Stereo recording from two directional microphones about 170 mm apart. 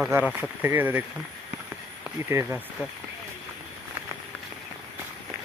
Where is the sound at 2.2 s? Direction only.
15° right (ahead or behind).